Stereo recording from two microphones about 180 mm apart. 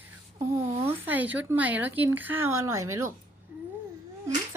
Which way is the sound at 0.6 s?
30° right (ahead or behind).